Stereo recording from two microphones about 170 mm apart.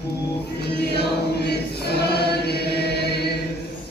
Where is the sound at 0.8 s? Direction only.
75° left (ahead or behind).